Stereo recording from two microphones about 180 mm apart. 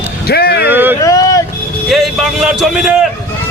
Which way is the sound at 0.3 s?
60° left (ahead or behind).